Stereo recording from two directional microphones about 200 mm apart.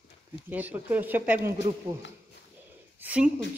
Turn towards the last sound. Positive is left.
turn(degrees=-5)  # may be behind; listen again after turning